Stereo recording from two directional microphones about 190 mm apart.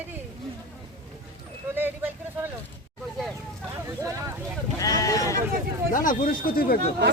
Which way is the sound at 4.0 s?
15° right (ahead or behind).